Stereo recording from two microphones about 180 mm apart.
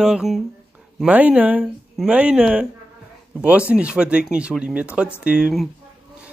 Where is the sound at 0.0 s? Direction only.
Centre (ahead or behind).